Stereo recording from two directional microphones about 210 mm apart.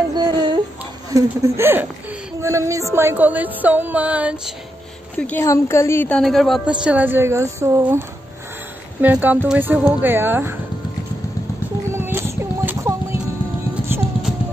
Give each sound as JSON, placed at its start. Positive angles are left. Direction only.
{"t": 0.1, "sound": "music", "side_deg": -20}
{"t": 5.1, "sound": "a woman's voice", "side_deg": 5}
{"t": 9.0, "sound": "music", "side_deg": -10}
{"t": 11.9, "sound": "music", "side_deg": -10}